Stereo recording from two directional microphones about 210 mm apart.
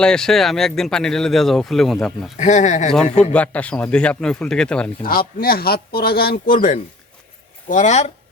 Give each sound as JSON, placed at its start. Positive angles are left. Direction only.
{"t": 0.0, "sound": "speech", "side_deg": 5}
{"t": 2.4, "sound": "speech", "side_deg": 35}
{"t": 3.3, "sound": "speech", "side_deg": 5}
{"t": 5.0, "sound": "speech", "side_deg": 45}